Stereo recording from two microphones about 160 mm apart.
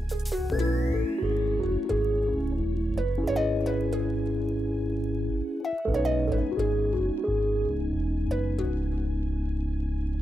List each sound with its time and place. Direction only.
0.5 s music: centre (ahead or behind)
5.7 s harp: centre (ahead or behind)